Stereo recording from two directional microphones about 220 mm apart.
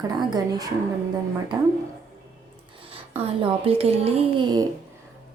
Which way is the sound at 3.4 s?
25° right (ahead or behind).